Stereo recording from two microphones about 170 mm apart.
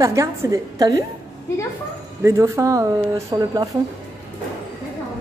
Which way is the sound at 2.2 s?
15° right (ahead or behind).